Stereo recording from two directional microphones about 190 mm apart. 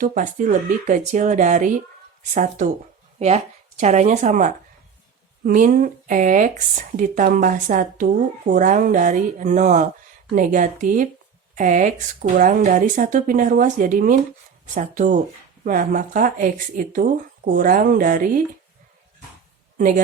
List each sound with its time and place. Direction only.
0.0 s speech: 45° right (ahead or behind)